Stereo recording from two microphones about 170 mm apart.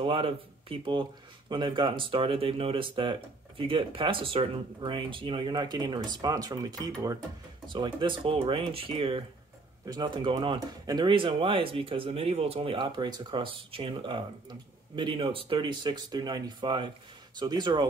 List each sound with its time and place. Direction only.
0.0 s speech: 30° right (ahead or behind)